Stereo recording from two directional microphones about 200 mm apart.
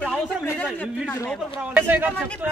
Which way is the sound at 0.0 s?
Centre (ahead or behind).